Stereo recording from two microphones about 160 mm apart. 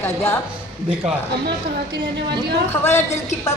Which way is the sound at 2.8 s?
15° left (ahead or behind).